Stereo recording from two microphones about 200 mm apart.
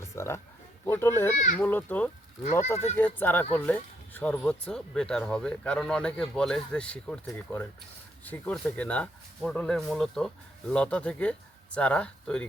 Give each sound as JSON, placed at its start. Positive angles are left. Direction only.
{"t": 0.2, "sound": "a child's voice", "side_deg": 15}
{"t": 2.4, "sound": "speech", "side_deg": 35}
{"t": 2.9, "sound": "a child's voice", "side_deg": 10}